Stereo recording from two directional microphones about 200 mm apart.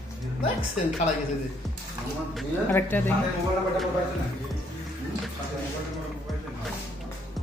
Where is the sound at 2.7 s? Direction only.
10° left (ahead or behind).